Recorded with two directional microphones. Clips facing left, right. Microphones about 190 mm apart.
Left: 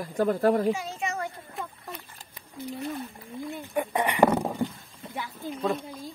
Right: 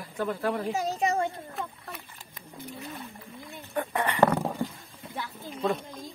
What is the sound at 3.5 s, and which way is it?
Speech, 15° left (ahead or behind).